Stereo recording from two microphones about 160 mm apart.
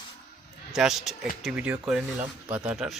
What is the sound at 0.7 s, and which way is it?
A man's voice, centre (ahead or behind).